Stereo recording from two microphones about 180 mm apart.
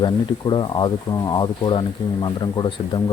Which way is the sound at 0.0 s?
25° left (ahead or behind).